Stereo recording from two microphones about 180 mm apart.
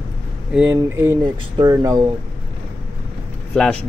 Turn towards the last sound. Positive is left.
turn(degrees=5)  # may be behind; listen again after turning